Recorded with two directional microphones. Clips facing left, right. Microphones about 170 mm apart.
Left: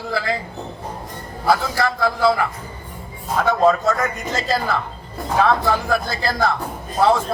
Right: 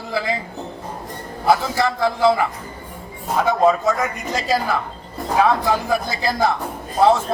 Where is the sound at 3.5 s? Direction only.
15° right (ahead or behind).